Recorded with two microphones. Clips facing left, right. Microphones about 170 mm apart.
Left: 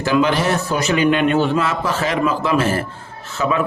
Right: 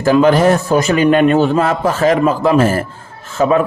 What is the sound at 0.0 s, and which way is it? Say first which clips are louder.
A man's voice: right 7 dB; 45° right (ahead or behind).